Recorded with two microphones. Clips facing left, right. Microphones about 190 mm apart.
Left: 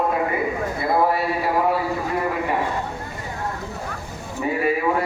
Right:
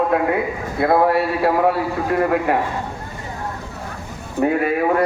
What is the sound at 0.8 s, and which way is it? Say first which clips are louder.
A man's voice: right 5 dB; 70° right (ahead or behind).